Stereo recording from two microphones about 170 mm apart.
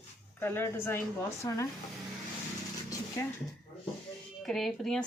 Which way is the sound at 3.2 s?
15° left (ahead or behind).